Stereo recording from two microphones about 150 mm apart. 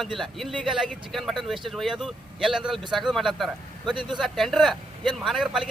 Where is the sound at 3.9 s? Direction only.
30° right (ahead or behind).